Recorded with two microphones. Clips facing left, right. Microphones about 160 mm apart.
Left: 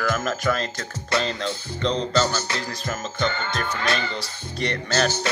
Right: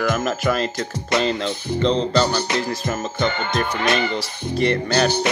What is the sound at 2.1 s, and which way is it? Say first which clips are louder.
Music: right 4 dB; 15° right (ahead or behind).